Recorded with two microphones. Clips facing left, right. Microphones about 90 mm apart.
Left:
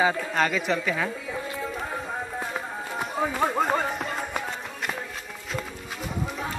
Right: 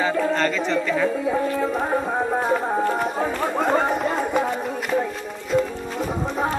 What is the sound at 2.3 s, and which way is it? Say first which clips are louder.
Run: right 11 dB; 65° right (ahead or behind).